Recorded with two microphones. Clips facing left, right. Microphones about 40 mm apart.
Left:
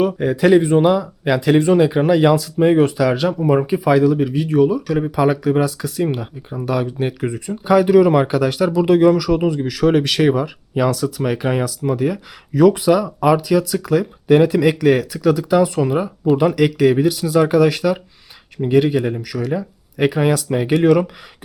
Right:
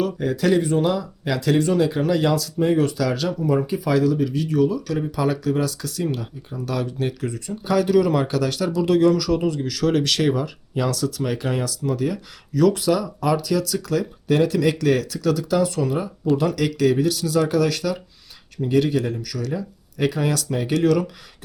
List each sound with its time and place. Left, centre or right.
0.0 s speech: left